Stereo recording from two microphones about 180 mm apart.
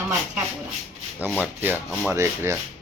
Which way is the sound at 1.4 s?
10° right (ahead or behind).